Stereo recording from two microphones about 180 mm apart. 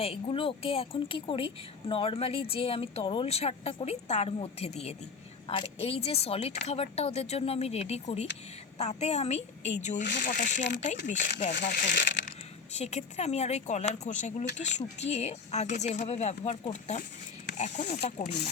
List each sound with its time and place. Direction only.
0.0 s a woman's voice: 30° left (ahead or behind)
12.8 s a woman's voice: 40° left (ahead or behind)
18.2 s speech: 65° left (ahead or behind)